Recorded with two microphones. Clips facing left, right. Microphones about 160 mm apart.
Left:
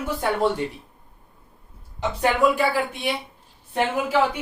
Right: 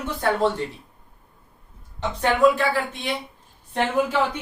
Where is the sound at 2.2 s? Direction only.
10° left (ahead or behind).